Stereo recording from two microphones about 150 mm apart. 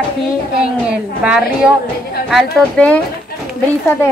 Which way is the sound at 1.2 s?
5° right (ahead or behind).